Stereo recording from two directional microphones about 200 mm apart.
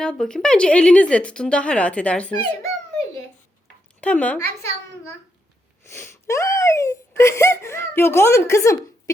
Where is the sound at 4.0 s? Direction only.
5° left (ahead or behind).